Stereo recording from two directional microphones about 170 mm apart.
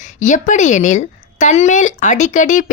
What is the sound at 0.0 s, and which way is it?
A woman's voice, 45° left (ahead or behind).